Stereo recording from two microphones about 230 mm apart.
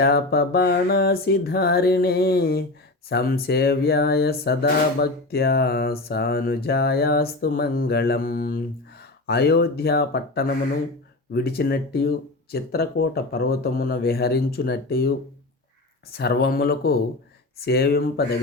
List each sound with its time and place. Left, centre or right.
0.0 s speech: left
16.1 s speech: left